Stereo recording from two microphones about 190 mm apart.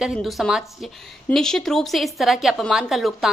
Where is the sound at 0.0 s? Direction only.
Centre (ahead or behind).